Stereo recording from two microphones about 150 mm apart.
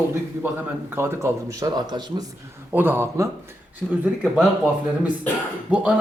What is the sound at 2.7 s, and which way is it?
Speech, 15° right (ahead or behind).